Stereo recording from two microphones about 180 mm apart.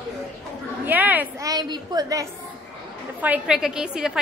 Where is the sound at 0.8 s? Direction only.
10° right (ahead or behind).